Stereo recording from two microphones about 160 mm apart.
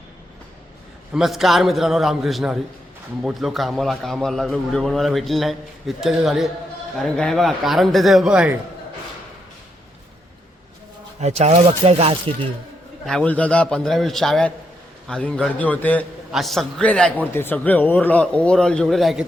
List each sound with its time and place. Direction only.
1.1 s a man's voice: centre (ahead or behind)
11.2 s speech: 45° right (ahead or behind)
13.1 s a man's voice: 5° left (ahead or behind)